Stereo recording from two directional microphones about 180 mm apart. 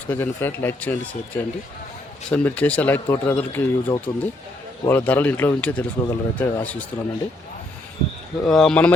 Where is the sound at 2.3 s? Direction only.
10° left (ahead or behind).